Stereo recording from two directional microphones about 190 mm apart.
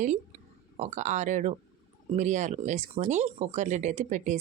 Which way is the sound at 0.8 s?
40° right (ahead or behind).